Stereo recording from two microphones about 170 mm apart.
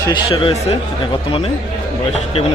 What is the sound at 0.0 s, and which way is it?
Speech, 30° left (ahead or behind).